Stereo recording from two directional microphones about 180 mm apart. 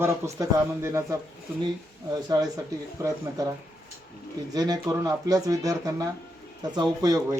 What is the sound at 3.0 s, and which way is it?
Speech, 20° right (ahead or behind).